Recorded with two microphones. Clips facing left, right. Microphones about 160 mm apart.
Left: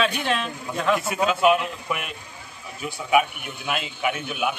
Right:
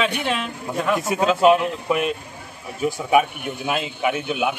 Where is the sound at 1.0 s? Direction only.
35° right (ahead or behind).